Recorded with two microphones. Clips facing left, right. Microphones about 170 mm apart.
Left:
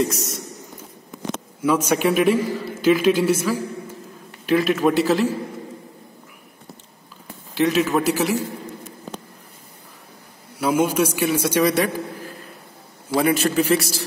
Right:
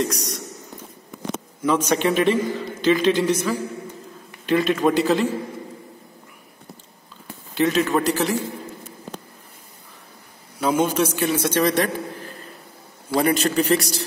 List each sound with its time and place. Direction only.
0.0 s a man's voice: 5° left (ahead or behind)
1.6 s a man's voice: 10° left (ahead or behind)
7.5 s a man's voice: centre (ahead or behind)
10.6 s a man's voice: 10° left (ahead or behind)
13.1 s a man's voice: centre (ahead or behind)